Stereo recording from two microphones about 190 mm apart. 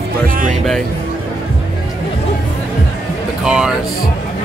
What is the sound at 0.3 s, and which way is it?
Speech, 45° right (ahead or behind).